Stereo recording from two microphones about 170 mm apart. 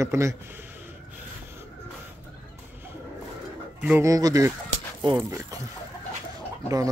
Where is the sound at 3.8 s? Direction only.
10° right (ahead or behind).